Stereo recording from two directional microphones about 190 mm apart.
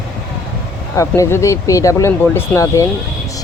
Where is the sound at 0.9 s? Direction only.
15° left (ahead or behind).